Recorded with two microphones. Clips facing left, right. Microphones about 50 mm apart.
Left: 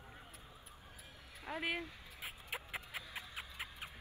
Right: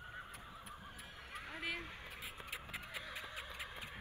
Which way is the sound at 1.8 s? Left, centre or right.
Right.